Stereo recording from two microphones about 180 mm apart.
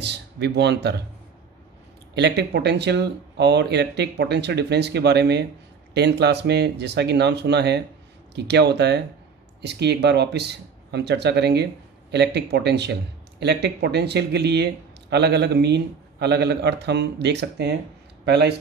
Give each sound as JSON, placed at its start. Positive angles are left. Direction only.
{"t": 0.0, "sound": "speech", "side_deg": -70}
{"t": 2.1, "sound": "speech", "side_deg": -70}